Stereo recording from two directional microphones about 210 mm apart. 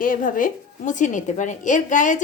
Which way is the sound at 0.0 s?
40° left (ahead or behind).